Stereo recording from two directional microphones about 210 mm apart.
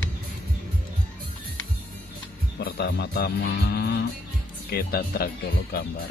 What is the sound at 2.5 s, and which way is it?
Speech, 50° left (ahead or behind).